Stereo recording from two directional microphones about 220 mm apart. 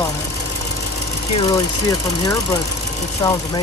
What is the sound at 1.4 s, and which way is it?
Speech, 15° left (ahead or behind).